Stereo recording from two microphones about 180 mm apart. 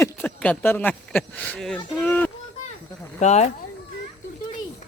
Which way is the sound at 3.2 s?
40° left (ahead or behind).